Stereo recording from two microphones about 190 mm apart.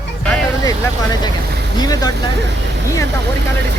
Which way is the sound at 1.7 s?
20° left (ahead or behind).